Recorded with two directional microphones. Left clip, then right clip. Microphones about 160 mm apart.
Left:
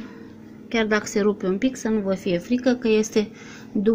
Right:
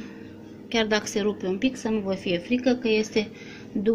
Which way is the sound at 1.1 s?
45° left (ahead or behind).